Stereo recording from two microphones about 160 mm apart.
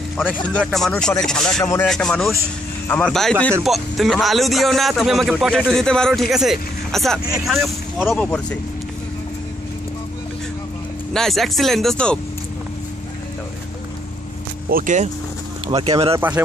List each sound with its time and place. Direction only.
0.5 s speech: 5° left (ahead or behind)
11.1 s speech: centre (ahead or behind)
14.7 s speech: 60° right (ahead or behind)
15.6 s speech: 35° right (ahead or behind)
16.2 s speech: 10° right (ahead or behind)